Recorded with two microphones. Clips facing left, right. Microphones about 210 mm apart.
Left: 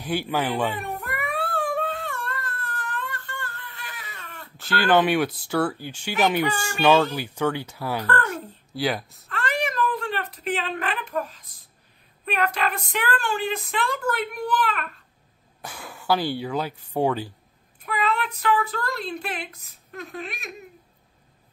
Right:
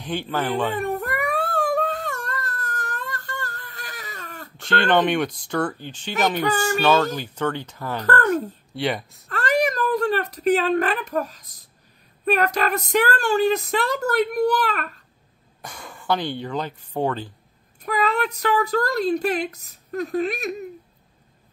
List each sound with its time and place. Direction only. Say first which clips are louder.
0.0 s speech: even; 10° left (ahead or behind)
0.8 s baby cry: right 6 dB; 45° right (ahead or behind)
4.6 s speech: even; 5° left (ahead or behind)
8.0 s a woman's voice: right 9 dB; 45° right (ahead or behind)
8.7 s speech: right 1 dB; centre (ahead or behind)
9.3 s a sound: right 6 dB; 40° right (ahead or behind)
12.3 s a woman's voice: right 5 dB; 40° right (ahead or behind)
15.6 s speech: even; 5° left (ahead or behind)
17.8 s a woman's voice: right 3 dB; 40° right (ahead or behind)